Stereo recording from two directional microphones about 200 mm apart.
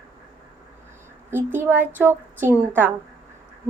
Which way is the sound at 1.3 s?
10° right (ahead or behind).